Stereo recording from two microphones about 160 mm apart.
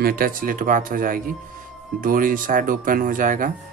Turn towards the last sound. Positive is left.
turn(degrees=-55)  # may be behind; listen again after turning